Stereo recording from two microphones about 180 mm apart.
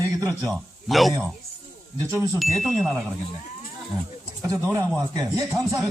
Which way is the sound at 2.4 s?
Centre (ahead or behind).